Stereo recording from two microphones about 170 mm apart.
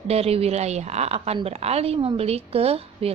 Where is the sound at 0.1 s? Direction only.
35° right (ahead or behind).